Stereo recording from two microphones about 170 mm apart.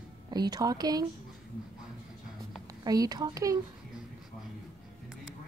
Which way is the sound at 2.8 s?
25° right (ahead or behind).